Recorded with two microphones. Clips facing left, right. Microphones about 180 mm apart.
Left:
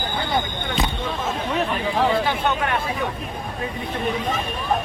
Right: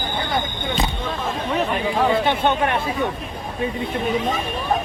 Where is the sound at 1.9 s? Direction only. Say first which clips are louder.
Right 1 dB; centre (ahead or behind).